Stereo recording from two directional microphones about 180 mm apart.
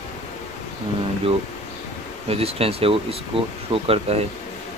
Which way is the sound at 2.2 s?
35° right (ahead or behind).